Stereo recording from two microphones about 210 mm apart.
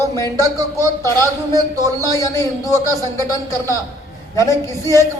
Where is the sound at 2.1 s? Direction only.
15° left (ahead or behind).